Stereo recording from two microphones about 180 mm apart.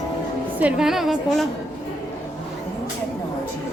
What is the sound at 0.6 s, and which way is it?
Speech, 5° right (ahead or behind).